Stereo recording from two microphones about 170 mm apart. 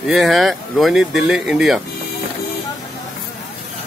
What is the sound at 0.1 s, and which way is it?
Speech, centre (ahead or behind).